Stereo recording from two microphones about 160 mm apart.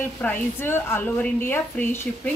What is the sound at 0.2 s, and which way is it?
A woman's voice, 10° left (ahead or behind).